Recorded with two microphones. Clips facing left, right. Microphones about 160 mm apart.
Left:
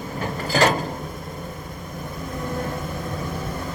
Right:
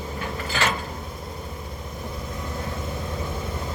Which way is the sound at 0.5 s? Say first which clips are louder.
Left 8 dB; 40° left (ahead or behind).